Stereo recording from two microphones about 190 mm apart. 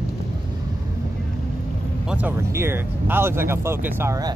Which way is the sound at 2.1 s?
10° right (ahead or behind).